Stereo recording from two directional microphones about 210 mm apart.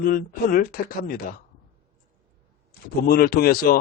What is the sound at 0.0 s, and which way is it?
Speech, 45° left (ahead or behind).